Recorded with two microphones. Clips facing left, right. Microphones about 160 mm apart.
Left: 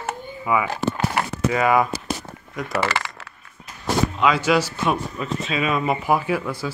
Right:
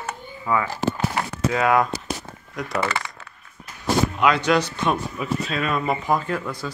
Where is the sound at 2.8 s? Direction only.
90° left.